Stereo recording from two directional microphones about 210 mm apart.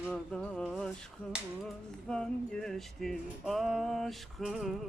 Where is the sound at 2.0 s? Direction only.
5° left (ahead or behind).